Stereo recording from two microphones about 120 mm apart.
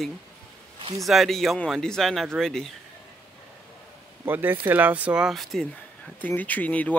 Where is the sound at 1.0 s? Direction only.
Centre (ahead or behind).